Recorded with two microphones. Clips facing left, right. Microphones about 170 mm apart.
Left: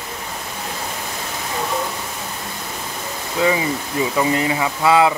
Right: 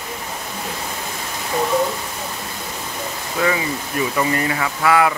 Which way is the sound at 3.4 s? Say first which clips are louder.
Left 2 dB; 20° left (ahead or behind).